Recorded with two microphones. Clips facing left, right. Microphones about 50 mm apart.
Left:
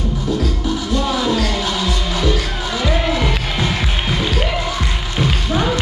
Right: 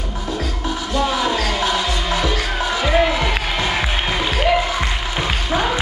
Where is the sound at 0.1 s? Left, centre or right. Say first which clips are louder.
Left 3 dB; centre.